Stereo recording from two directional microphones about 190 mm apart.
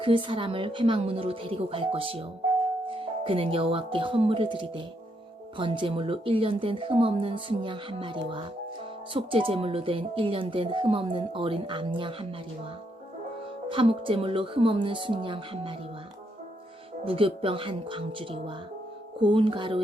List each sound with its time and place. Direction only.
0.0 s speech: 25° right (ahead or behind)
13.7 s speech: 25° right (ahead or behind)
17.1 s speech: 30° right (ahead or behind)